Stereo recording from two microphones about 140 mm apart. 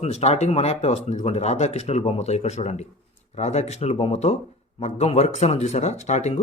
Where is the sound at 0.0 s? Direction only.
50° left (ahead or behind).